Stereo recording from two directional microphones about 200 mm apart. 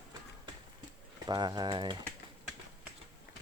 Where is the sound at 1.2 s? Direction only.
20° right (ahead or behind).